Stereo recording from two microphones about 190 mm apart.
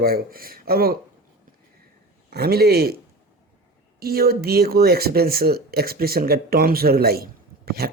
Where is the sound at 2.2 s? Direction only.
55° right (ahead or behind).